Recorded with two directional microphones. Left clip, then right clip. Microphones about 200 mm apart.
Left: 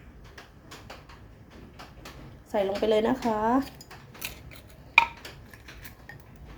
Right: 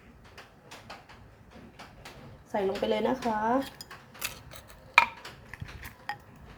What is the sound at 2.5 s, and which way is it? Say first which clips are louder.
Speech: left 4 dB; 20° left (ahead or behind).